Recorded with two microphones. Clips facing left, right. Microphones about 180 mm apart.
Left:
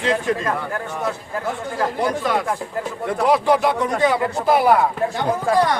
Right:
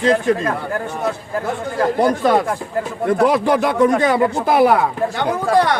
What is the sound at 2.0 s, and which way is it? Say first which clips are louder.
Speech: right 6 dB; 40° right (ahead or behind).